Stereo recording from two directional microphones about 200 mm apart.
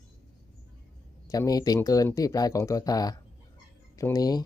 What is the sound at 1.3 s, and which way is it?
Speech, 20° left (ahead or behind).